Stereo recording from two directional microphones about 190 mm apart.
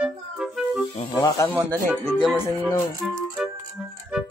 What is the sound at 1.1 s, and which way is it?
Speech, 15° left (ahead or behind).